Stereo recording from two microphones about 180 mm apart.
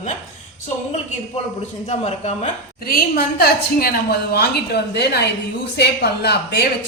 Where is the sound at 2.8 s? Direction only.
55° left (ahead or behind).